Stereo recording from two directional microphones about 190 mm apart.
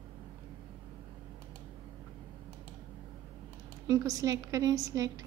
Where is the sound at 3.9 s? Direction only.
15° right (ahead or behind).